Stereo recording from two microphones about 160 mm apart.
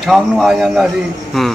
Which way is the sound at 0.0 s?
Centre (ahead or behind).